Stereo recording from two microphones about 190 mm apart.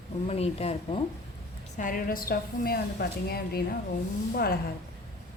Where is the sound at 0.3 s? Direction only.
35° left (ahead or behind).